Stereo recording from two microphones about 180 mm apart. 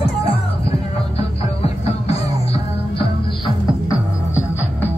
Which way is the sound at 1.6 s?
35° left (ahead or behind).